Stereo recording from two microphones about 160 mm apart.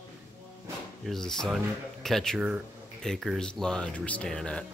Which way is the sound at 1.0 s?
5° left (ahead or behind).